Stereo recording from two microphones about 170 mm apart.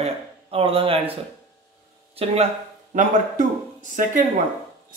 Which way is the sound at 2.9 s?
50° right (ahead or behind).